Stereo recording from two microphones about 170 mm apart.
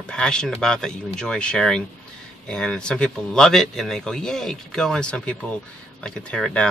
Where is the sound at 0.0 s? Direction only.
5° left (ahead or behind).